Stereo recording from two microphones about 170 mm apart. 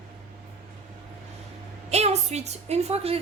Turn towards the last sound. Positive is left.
turn(degrees=-35)  # may be behind; listen again after turning